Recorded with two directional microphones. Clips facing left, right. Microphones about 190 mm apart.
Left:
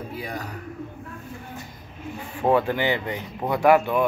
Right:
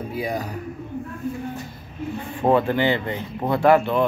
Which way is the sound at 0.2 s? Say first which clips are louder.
Right 8 dB; 10° right (ahead or behind).